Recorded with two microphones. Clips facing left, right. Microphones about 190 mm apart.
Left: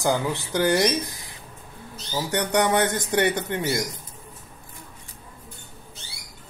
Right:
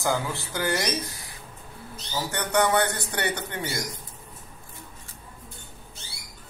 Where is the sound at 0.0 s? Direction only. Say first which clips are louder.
Left 3 dB; 15° left (ahead or behind).